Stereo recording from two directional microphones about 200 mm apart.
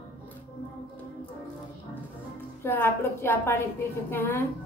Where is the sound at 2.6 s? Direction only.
10° left (ahead or behind).